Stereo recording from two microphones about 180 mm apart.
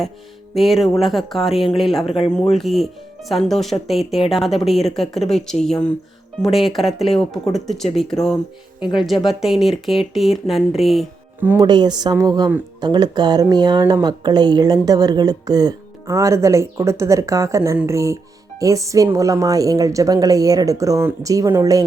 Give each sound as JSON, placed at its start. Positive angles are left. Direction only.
{"t": 0.5, "sound": "speech", "side_deg": 0}
{"t": 2.0, "sound": "speech", "side_deg": 30}
{"t": 2.3, "sound": "speech", "side_deg": 5}
{"t": 11.3, "sound": "speech", "side_deg": -10}
{"t": 11.6, "sound": "speech", "side_deg": -25}